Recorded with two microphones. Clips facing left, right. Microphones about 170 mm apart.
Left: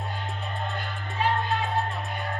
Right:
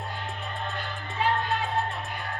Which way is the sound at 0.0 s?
Centre (ahead or behind).